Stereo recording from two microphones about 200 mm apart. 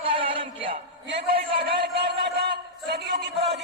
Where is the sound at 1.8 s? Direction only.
55° right (ahead or behind).